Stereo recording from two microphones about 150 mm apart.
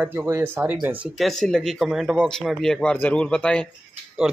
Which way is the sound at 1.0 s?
Centre (ahead or behind).